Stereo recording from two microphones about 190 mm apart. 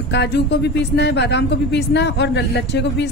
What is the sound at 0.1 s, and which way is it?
A woman's voice, 60° left (ahead or behind).